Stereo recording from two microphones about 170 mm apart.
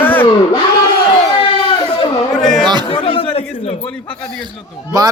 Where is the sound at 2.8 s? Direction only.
30° left (ahead or behind).